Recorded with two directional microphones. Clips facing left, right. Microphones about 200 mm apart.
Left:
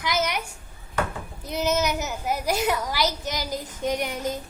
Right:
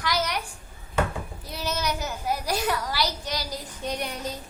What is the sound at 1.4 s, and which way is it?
Child singing, 20° left (ahead or behind).